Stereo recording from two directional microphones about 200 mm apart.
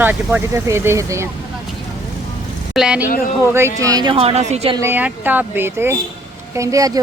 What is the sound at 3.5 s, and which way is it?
A woman's voice, 15° right (ahead or behind).